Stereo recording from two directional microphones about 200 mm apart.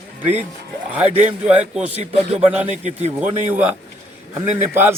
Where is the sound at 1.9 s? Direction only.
30° right (ahead or behind).